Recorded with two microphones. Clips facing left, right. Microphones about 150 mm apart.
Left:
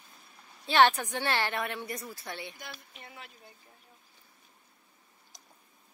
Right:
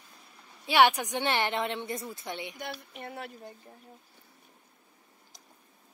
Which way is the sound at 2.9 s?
55° right (ahead or behind).